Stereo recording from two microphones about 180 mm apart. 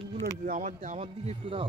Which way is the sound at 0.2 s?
50° right (ahead or behind).